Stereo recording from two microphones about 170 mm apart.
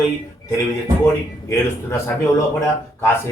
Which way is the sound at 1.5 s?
15° left (ahead or behind).